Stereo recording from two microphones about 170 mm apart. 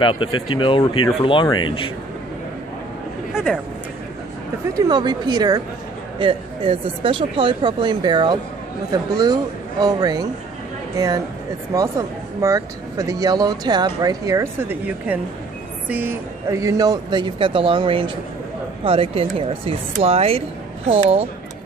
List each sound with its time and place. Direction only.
0.0 s speech: 30° left (ahead or behind)
3.3 s speech: 5° right (ahead or behind)
4.7 s speech: 25° right (ahead or behind)
12.4 s speech: 20° right (ahead or behind); by 21.3 s 35° right (ahead or behind)